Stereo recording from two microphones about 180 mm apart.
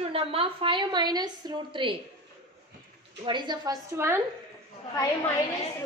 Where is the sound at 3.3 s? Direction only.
25° right (ahead or behind).